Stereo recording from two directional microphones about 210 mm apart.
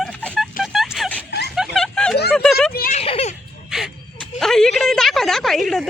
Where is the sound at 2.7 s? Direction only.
40° left (ahead or behind).